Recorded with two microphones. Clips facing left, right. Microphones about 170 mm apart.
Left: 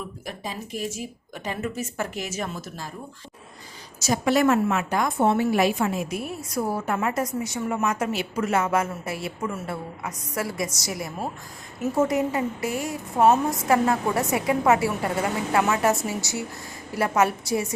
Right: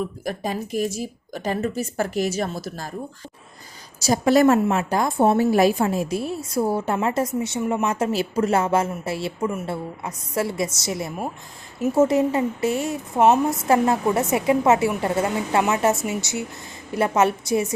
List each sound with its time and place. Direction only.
0.3 s a woman's voice: 45° right (ahead or behind)
4.0 s a woman's voice: 40° right (ahead or behind); by 17.7 s 20° right (ahead or behind)